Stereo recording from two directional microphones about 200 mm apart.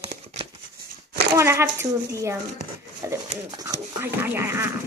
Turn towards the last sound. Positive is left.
turn(degrees=-10)  # may be behind; listen again after turning